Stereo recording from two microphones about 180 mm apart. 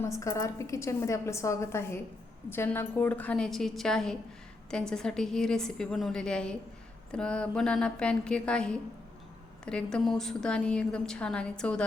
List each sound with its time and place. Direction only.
0.0 s a woman's voice: 15° left (ahead or behind)